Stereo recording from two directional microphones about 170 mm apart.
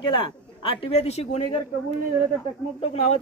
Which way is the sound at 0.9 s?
35° left (ahead or behind).